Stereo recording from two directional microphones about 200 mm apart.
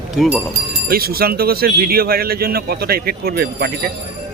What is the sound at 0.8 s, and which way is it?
Speech, 50° right (ahead or behind).